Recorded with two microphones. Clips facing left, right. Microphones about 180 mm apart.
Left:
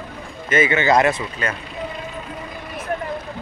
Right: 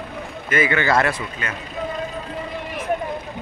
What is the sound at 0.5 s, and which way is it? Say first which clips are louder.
Speech: left 3 dB; 20° left (ahead or behind).